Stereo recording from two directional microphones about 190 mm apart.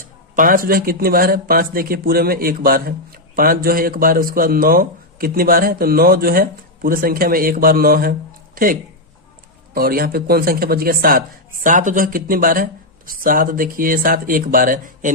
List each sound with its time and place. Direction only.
0.3 s speech: 45° right (ahead or behind)